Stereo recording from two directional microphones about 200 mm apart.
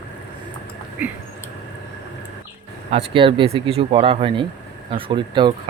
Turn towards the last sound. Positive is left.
turn(degrees=-25)  # may be behind; listen again after turning